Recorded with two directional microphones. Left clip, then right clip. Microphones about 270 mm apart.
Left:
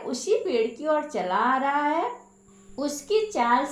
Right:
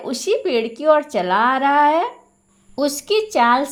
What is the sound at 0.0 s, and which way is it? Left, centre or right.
A woman's voice, right.